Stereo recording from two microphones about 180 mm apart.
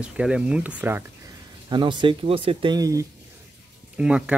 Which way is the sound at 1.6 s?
25° right (ahead or behind).